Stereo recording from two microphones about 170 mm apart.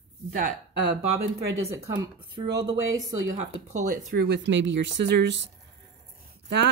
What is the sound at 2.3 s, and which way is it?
Speech, 30° right (ahead or behind).